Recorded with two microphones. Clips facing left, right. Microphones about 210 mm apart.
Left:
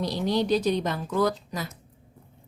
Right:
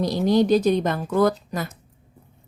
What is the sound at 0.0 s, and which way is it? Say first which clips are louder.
A woman's voice: right 6 dB; 45° right (ahead or behind).